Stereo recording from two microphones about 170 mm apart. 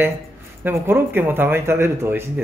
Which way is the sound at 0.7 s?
10° right (ahead or behind).